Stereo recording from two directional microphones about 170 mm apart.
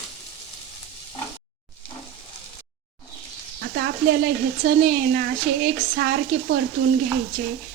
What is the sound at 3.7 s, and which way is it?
Speech, 65° right (ahead or behind).